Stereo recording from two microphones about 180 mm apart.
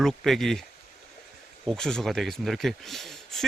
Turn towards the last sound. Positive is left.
turn(degrees=0)  # may be behind; listen again after turning